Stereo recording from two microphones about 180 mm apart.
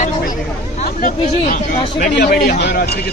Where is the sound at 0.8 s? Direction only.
50° left (ahead or behind).